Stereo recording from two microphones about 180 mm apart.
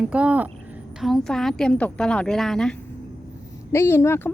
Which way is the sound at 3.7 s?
15° left (ahead or behind).